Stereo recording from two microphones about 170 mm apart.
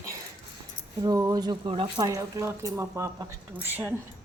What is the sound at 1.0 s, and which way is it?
Speech, 20° right (ahead or behind).